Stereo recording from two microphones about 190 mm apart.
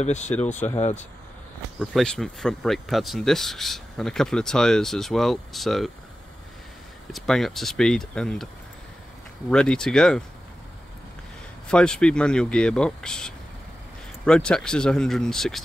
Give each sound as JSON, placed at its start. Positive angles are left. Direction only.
{"t": 0.0, "sound": "speech", "side_deg": 35}
{"t": 1.8, "sound": "speech", "side_deg": 0}
{"t": 7.1, "sound": "speech", "side_deg": 0}
{"t": 9.5, "sound": "speech", "side_deg": 5}
{"t": 11.7, "sound": "speech", "side_deg": 5}